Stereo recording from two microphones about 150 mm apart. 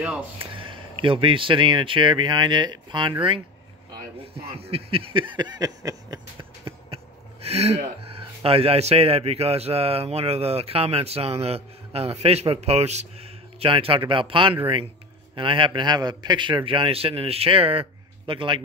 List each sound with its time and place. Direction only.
0.4 s a man's voice: 35° right (ahead or behind)
7.4 s a man's voice: 45° right (ahead or behind)